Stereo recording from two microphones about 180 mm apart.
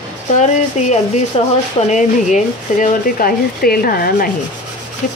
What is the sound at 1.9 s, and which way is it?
Speech, 45° left (ahead or behind).